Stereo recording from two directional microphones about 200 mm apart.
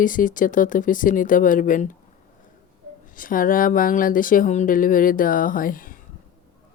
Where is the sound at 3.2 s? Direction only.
45° left (ahead or behind).